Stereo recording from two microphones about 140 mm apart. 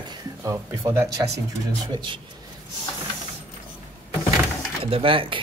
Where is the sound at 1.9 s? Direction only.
35° right (ahead or behind).